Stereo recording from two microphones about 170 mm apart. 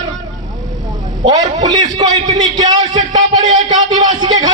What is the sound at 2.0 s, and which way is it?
A man's voice, 25° right (ahead or behind).